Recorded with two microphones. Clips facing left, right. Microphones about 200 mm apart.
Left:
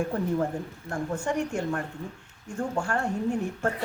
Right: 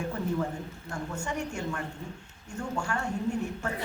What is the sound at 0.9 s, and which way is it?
Speech, 55° left (ahead or behind).